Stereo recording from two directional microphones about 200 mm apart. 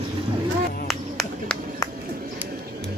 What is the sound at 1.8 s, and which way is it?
Bird, 15° left (ahead or behind).